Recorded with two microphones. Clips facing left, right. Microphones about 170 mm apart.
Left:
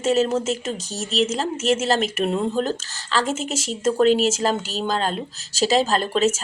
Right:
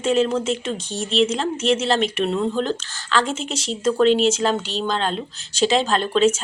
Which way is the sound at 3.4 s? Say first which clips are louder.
Left 1 dB; 45° left (ahead or behind).